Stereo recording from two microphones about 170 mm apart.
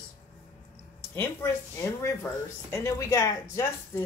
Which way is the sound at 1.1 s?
15° left (ahead or behind).